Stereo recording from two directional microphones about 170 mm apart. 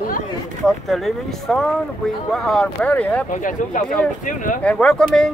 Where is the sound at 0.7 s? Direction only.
Centre (ahead or behind).